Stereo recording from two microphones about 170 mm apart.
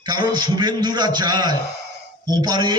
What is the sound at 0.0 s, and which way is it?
A man's voice, 25° right (ahead or behind).